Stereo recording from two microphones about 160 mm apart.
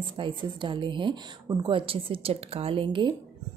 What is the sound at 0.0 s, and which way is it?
Speech, 30° right (ahead or behind).